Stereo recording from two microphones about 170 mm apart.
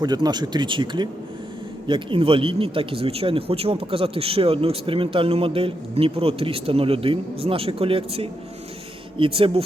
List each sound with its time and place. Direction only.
0.0 s speech: 25° right (ahead or behind)